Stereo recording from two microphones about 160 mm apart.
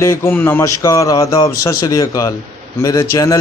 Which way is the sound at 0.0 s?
15° left (ahead or behind).